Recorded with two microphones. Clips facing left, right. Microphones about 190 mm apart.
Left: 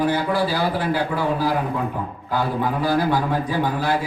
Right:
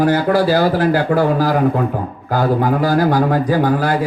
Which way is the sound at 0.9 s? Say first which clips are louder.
Right 7 dB; 45° right (ahead or behind).